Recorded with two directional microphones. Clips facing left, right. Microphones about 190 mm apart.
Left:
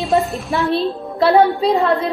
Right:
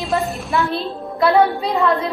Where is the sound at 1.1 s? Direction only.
30° left (ahead or behind).